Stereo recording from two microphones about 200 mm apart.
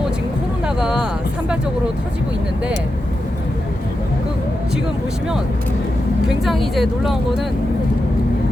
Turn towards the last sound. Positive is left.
turn(degrees=0)  # may be behind; listen again after turning